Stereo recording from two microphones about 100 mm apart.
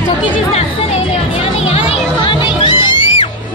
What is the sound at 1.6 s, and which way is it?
Music, 80° left.